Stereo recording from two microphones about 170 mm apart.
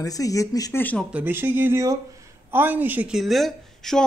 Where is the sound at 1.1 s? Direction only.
10° right (ahead or behind).